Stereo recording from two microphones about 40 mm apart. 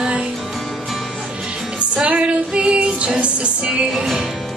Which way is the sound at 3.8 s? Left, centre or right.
Centre.